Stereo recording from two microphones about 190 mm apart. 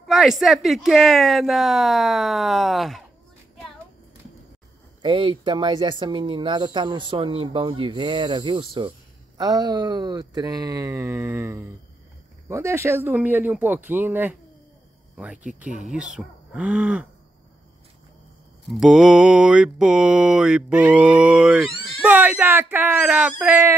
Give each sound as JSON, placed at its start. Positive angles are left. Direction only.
{"t": 0.0, "sound": "speech", "side_deg": 0}
{"t": 5.0, "sound": "speech", "side_deg": -25}
{"t": 18.7, "sound": "speech", "side_deg": 0}